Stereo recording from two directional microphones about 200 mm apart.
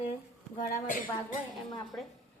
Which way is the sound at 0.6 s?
40° left (ahead or behind).